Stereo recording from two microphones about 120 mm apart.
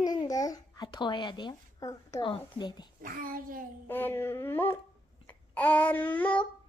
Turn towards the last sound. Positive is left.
turn(degrees=15)  # may be behind; listen again after turning